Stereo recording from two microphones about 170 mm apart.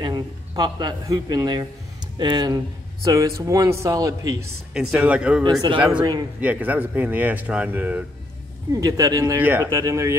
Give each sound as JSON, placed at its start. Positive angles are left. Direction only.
{"t": 0.0, "sound": "speech", "side_deg": -25}
{"t": 4.7, "sound": "speech", "side_deg": -5}
{"t": 5.4, "sound": "speech", "side_deg": -25}
{"t": 6.4, "sound": "speech", "side_deg": -10}